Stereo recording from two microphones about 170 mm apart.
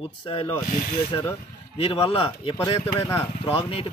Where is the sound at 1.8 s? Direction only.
35° left (ahead or behind).